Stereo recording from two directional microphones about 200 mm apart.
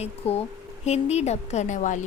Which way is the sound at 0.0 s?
30° left (ahead or behind).